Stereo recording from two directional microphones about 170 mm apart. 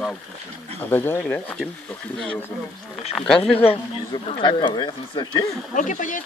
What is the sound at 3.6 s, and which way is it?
Speech, 30° left (ahead or behind).